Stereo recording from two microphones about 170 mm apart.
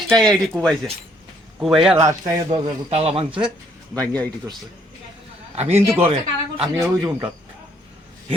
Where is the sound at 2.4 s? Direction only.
35° right (ahead or behind).